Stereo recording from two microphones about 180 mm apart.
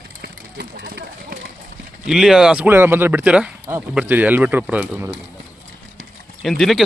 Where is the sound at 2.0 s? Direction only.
5° right (ahead or behind).